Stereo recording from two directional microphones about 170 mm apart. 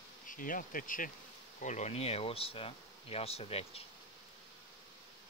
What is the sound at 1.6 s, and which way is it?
Speech, 45° left (ahead or behind).